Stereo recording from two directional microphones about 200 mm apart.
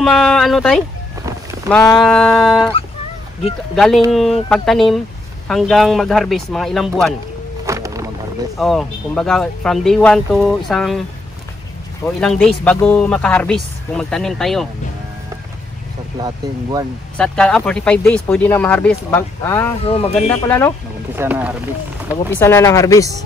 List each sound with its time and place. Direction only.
0.0 s speech: 5° left (ahead or behind)
2.0 s speech: 5° left (ahead or behind)
3.7 s speech: centre (ahead or behind)
7.6 s a sound: 15° right (ahead or behind)
8.5 s speech: centre (ahead or behind)
12.2 s speech: centre (ahead or behind)
17.2 s speech: 5° left (ahead or behind)
19.8 s speech: 30° left (ahead or behind)
20.2 s speech: 10° left (ahead or behind)
21.2 s speech: 10° right (ahead or behind)
22.3 s speech: 10° left (ahead or behind)